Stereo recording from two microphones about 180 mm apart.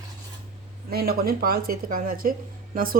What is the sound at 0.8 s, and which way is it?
A woman's voice, 55° right (ahead or behind).